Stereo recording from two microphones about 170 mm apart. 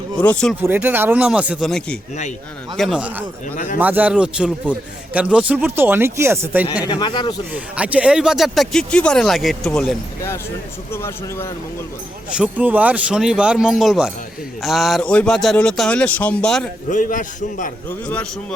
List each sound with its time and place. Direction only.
0.2 s a man's voice: 5° left (ahead or behind)
0.6 s a man's voice: 10° right (ahead or behind)
2.7 s a man's voice: centre (ahead or behind)
6.8 s speech: 25° left (ahead or behind)
7.5 s speech: 10° right (ahead or behind)
10.9 s a man's voice: 15° left (ahead or behind)
12.3 s speech: 5° right (ahead or behind)
16.9 s a man's voice: 50° left (ahead or behind)
17.8 s a man's voice: 10° left (ahead or behind)